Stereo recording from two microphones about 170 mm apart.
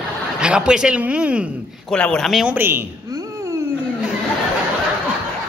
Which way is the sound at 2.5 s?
15° right (ahead or behind).